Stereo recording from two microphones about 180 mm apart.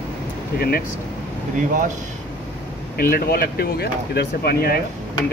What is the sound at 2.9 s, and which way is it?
Speech, 55° left (ahead or behind).